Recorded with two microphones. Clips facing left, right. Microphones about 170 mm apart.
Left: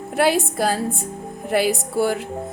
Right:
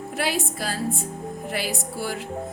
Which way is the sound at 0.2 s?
55° left (ahead or behind).